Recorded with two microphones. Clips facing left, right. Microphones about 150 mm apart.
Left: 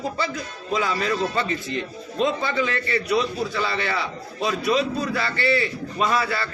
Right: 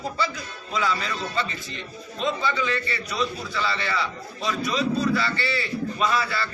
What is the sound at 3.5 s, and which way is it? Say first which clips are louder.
A man's voice: left 2 dB; 50° left (ahead or behind).